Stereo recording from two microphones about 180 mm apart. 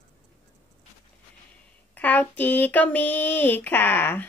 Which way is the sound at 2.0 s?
10° left (ahead or behind).